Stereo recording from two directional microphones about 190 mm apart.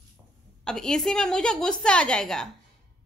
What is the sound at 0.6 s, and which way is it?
A woman's voice, 5° left (ahead or behind).